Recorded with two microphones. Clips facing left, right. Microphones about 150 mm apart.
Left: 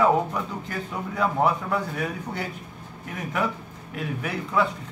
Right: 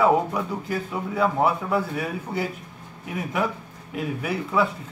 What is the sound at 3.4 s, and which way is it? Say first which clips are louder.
Speech: right 1 dB; 10° right (ahead or behind).